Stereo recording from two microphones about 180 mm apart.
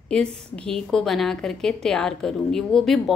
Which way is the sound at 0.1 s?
5° left (ahead or behind).